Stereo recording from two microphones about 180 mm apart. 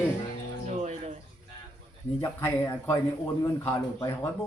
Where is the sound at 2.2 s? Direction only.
15° left (ahead or behind).